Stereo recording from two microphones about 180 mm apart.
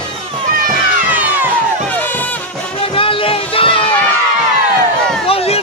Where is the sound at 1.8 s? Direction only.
10° left (ahead or behind).